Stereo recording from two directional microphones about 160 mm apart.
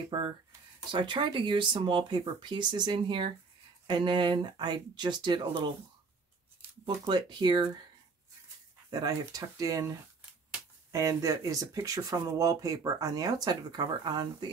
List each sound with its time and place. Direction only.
0.9 s speech: 30° right (ahead or behind)
7.1 s speech: 30° right (ahead or behind)
9.0 s speech: 25° right (ahead or behind)